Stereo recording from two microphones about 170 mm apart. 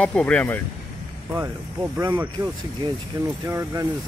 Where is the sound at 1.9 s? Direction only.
15° right (ahead or behind).